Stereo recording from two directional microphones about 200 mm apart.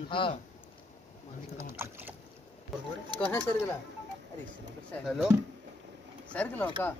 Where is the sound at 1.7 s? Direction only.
10° right (ahead or behind).